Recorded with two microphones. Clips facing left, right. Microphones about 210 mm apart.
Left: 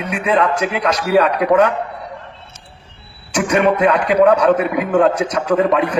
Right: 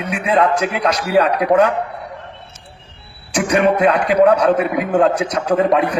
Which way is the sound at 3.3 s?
30° right (ahead or behind).